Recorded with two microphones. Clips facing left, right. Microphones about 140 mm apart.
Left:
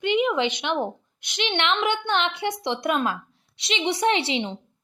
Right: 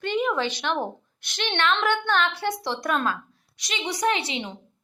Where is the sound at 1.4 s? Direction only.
20° left (ahead or behind).